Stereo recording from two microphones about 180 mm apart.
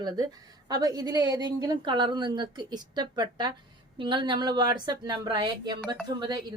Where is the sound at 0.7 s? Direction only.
20° right (ahead or behind).